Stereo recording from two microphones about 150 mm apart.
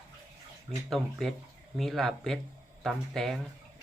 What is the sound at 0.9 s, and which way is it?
Speech, centre (ahead or behind).